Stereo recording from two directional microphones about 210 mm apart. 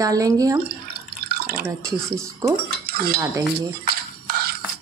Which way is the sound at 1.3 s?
45° right (ahead or behind).